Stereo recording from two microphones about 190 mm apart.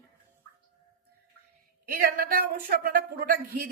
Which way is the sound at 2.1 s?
50° right (ahead or behind).